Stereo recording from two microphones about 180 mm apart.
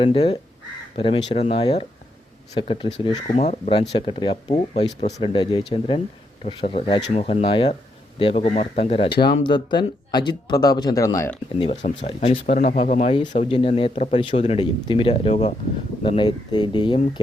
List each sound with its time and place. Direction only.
0.0 s speech: 30° left (ahead or behind)
11.6 s speech: 35° left (ahead or behind)
16.0 s speech: 25° left (ahead or behind)